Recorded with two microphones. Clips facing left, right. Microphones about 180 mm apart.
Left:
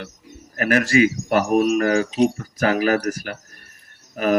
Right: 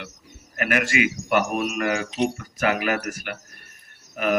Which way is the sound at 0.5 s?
35° left (ahead or behind).